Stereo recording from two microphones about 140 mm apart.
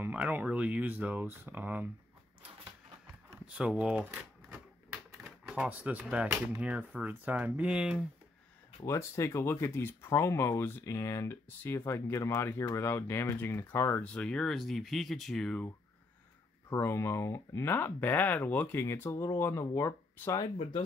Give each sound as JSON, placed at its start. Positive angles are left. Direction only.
{"t": 0.0, "sound": "speech", "side_deg": -10}
{"t": 3.3, "sound": "typewriter", "side_deg": -10}
{"t": 5.5, "sound": "speech", "side_deg": -10}
{"t": 8.8, "sound": "speech", "side_deg": 20}
{"t": 16.6, "sound": "speech", "side_deg": 20}